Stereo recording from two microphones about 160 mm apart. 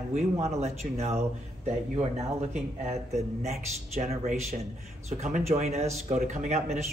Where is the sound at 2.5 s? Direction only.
45° right (ahead or behind).